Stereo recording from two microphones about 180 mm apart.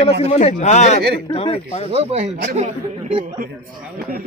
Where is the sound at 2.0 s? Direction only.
35° right (ahead or behind).